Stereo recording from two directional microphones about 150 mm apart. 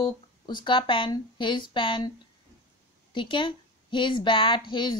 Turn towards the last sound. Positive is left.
turn(degrees=30)  # may be behind; listen again after turning